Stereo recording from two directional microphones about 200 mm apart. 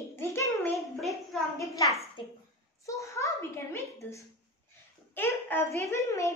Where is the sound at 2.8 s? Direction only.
15° left (ahead or behind).